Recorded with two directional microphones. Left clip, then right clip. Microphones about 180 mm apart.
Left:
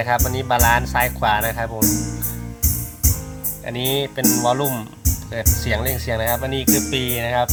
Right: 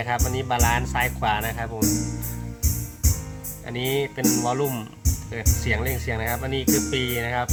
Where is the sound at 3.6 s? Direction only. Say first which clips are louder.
Left 3 dB; 20° left (ahead or behind).